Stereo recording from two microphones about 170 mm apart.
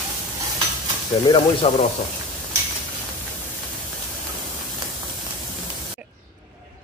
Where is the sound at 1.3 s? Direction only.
30° left (ahead or behind).